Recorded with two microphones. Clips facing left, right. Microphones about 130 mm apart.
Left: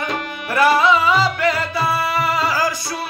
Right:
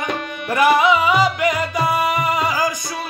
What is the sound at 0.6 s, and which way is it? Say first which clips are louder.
Music: even; 15° right (ahead or behind).